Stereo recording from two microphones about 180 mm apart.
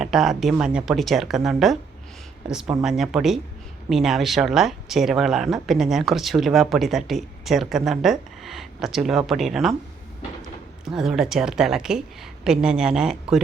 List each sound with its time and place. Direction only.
0.0 s speech: centre (ahead or behind)
10.8 s speech: centre (ahead or behind)